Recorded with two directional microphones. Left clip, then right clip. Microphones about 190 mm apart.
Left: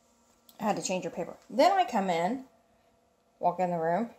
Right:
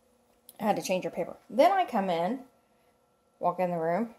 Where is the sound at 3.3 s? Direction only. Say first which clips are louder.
Even; 15° right (ahead or behind).